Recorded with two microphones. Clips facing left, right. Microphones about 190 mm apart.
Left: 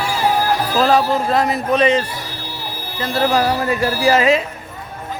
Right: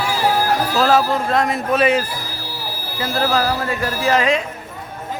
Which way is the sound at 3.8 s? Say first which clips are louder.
Left 4 dB; 30° left (ahead or behind).